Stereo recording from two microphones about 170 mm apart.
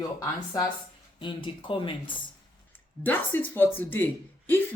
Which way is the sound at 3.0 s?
10° left (ahead or behind).